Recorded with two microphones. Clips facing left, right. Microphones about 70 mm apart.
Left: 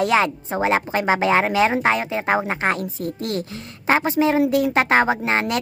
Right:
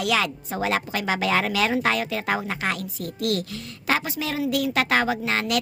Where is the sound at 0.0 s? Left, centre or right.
Left.